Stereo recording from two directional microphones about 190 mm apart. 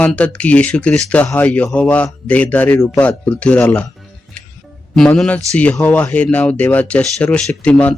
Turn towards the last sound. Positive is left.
turn(degrees=5)  # may be behind; listen again after turning